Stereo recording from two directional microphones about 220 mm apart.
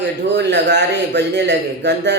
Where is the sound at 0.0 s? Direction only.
50° right (ahead or behind).